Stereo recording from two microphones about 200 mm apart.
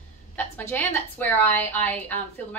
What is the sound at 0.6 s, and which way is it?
A woman's voice, 10° left (ahead or behind).